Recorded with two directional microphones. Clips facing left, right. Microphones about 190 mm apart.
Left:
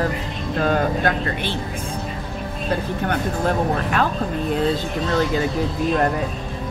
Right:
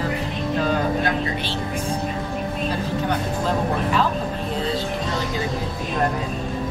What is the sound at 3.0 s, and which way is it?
Speech, 60° left (ahead or behind).